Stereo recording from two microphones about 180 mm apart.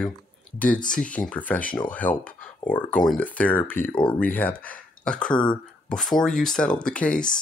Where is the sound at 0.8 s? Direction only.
45° left (ahead or behind).